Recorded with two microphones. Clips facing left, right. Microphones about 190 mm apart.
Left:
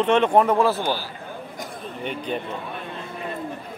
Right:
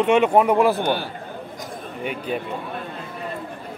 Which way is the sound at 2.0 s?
5° right (ahead or behind).